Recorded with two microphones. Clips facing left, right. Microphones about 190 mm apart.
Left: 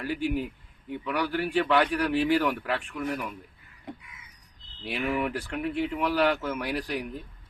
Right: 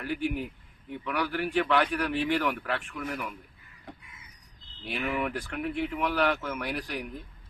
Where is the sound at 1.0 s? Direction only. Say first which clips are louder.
Left 2 dB; 5° left (ahead or behind).